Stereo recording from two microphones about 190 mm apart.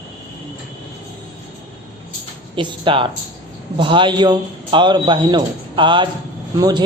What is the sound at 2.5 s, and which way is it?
A woman's voice, 25° right (ahead or behind).